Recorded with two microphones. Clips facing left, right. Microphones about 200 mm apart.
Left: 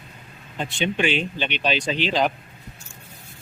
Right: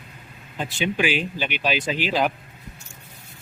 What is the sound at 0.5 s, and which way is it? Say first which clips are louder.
Speech: even; 5° right (ahead or behind).